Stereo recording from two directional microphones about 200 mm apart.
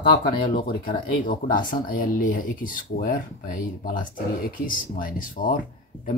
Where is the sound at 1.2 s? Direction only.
40° left (ahead or behind).